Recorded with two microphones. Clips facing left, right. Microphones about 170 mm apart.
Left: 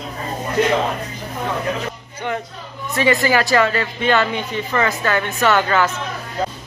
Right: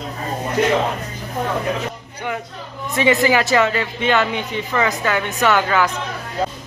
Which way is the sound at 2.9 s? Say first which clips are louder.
Right 1 dB; 20° right (ahead or behind).